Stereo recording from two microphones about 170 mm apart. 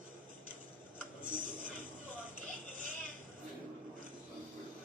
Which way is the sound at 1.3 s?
50° right (ahead or behind).